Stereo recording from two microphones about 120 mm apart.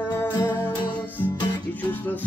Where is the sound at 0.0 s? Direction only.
15° left (ahead or behind).